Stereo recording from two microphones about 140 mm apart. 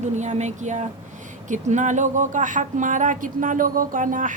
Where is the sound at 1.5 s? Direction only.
60° right (ahead or behind).